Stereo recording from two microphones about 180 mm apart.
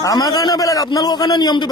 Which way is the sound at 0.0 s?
20° left (ahead or behind).